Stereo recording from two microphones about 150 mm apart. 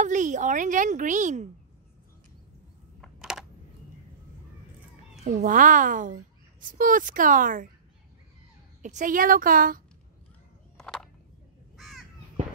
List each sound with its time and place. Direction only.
0.0 s a child's voice: 55° right (ahead or behind)
3.0 s computer keyboard: centre (ahead or behind)
5.4 s a child's voice: 60° right (ahead or behind)
8.8 s a woman's voice: 60° right (ahead or behind)
10.8 s a sound: 5° left (ahead or behind)
11.7 s crow: centre (ahead or behind)